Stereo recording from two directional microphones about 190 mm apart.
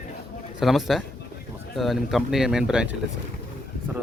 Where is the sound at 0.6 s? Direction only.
Centre (ahead or behind).